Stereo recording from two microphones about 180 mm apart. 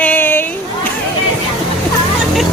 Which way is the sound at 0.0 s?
10° left (ahead or behind).